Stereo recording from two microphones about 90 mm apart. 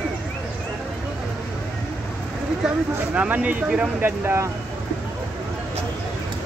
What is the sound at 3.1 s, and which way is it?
Speech, 15° right (ahead or behind).